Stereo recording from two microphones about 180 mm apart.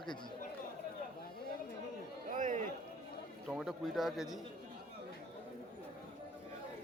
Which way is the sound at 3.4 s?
Centre (ahead or behind).